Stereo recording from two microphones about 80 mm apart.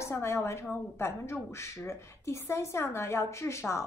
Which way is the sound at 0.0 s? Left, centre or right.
Left.